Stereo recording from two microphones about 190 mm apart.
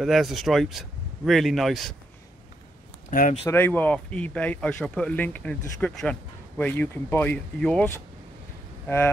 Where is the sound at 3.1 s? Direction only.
45° left (ahead or behind).